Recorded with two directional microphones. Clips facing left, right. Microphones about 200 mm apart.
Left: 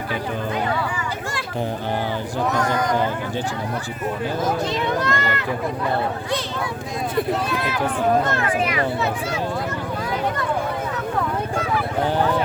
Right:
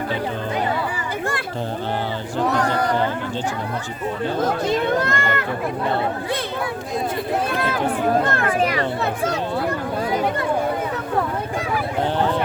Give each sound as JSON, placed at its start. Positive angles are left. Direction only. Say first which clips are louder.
{"t": 2.5, "sound": "a sound", "louder": "right 1 dB", "side_deg": -35}
{"t": 4.4, "sound": "speech", "louder": "right 4 dB", "side_deg": -55}
{"t": 8.3, "sound": "speech", "louder": "right 1 dB", "side_deg": -55}
{"t": 8.5, "sound": "speech", "louder": "right 1 dB", "side_deg": -35}
{"t": 9.0, "sound": "speech", "louder": "right 1 dB", "side_deg": -55}